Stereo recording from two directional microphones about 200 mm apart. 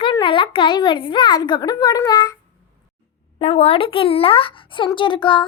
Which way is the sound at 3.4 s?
30° left (ahead or behind).